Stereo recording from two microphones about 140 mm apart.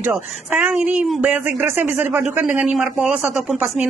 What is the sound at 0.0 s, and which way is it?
Speech, 10° right (ahead or behind).